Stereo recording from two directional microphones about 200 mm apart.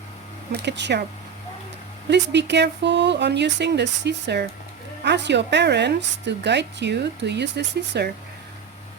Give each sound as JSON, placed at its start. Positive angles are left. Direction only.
{"t": 0.5, "sound": "a woman's voice", "side_deg": -60}
{"t": 2.0, "sound": "a woman's voice", "side_deg": -60}